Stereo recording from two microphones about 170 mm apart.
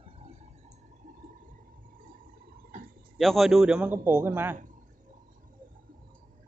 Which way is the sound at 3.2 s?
Centre (ahead or behind).